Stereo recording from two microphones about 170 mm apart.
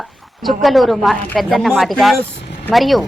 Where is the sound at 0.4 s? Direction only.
Centre (ahead or behind).